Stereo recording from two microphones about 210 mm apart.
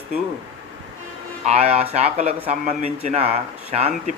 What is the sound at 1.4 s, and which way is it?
Speech, 30° right (ahead or behind).